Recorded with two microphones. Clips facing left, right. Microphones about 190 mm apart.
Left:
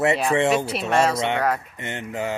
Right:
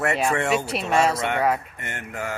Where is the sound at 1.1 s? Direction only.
25° left (ahead or behind).